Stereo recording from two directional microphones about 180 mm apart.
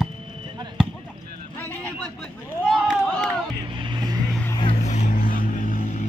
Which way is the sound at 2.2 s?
5° right (ahead or behind).